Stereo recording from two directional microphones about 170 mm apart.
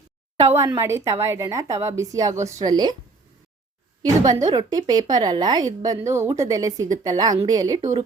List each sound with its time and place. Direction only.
0.5 s a woman's voice: 15° right (ahead or behind)
4.3 s a woman's voice: 20° right (ahead or behind)